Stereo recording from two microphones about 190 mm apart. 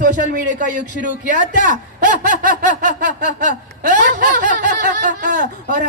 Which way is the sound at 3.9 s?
40° left (ahead or behind).